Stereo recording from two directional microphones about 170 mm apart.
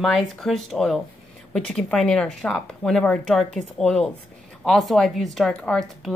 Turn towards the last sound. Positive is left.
turn(degrees=0)  # may be behind; listen again after turning